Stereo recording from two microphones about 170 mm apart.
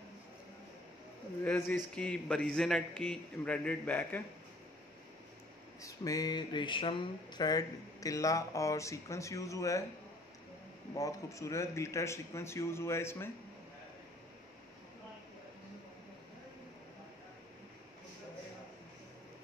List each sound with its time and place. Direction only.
1.4 s a man's voice: 10° left (ahead or behind)
5.8 s speech: 20° left (ahead or behind)
11.0 s speech: 20° left (ahead or behind)